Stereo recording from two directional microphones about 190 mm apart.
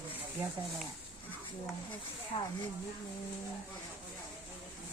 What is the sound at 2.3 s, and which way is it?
Speech, 30° left (ahead or behind).